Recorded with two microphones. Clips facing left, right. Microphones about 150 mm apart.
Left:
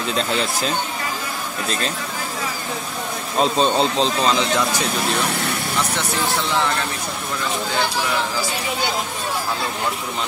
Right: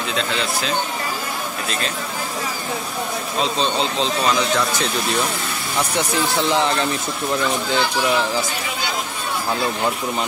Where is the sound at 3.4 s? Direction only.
45° left (ahead or behind).